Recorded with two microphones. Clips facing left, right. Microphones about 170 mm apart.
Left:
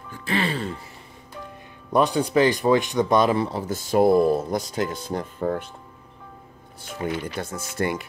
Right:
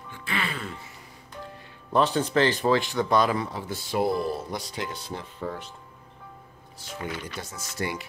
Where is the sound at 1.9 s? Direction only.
15° left (ahead or behind); by 5.7 s 50° left (ahead or behind).